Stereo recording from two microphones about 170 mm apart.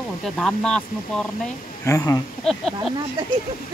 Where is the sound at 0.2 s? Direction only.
5° left (ahead or behind).